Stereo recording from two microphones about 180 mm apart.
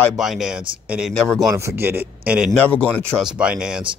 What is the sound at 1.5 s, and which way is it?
Speech, 15° right (ahead or behind).